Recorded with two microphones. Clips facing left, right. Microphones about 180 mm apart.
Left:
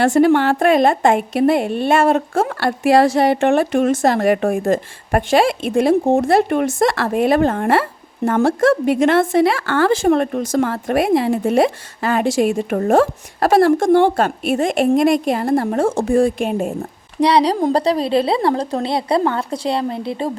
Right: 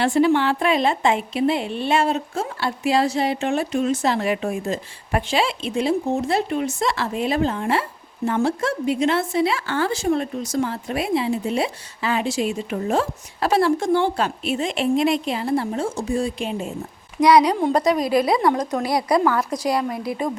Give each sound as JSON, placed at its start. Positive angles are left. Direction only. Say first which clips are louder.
{"t": 0.0, "sound": "a woman's voice", "louder": "left 5 dB", "side_deg": 50}
{"t": 2.3, "sound": "a woman's voice", "louder": "left 7 dB", "side_deg": 85}
{"t": 6.9, "sound": "a woman's voice", "louder": "left 7 dB", "side_deg": 55}
{"t": 8.4, "sound": "a woman's voice", "louder": "left 8 dB", "side_deg": 90}
{"t": 9.5, "sound": "speech", "louder": "left 7 dB", "side_deg": 50}
{"t": 10.7, "sound": "a woman's voice", "louder": "left 7 dB", "side_deg": 50}
{"t": 17.2, "sound": "a woman's voice", "louder": "left 1 dB", "side_deg": 30}